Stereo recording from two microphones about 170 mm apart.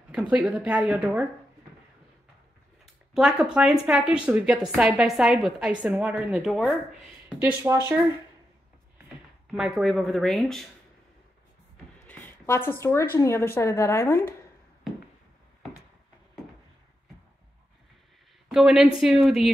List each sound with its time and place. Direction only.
0.1 s speech: 5° right (ahead or behind)
3.2 s a woman's voice: 5° right (ahead or behind)
9.5 s a woman's voice: centre (ahead or behind)
12.1 s a sound: 10° left (ahead or behind)
12.8 s a woman's voice: 15° left (ahead or behind)
18.5 s a woman's voice: 5° right (ahead or behind)